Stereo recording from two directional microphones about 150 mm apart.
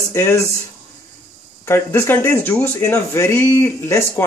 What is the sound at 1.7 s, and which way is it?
Speech, 15° left (ahead or behind).